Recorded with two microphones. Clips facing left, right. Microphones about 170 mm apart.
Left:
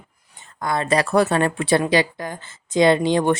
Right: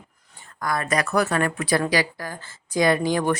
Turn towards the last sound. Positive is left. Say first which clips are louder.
# left 4 dB
turn(degrees=25)  # may be behind; listen again after turning